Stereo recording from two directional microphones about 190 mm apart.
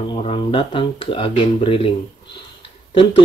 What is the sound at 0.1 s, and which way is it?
Speech, 25° left (ahead or behind).